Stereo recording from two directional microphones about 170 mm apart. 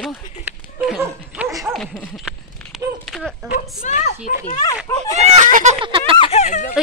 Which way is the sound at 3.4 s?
55° left (ahead or behind).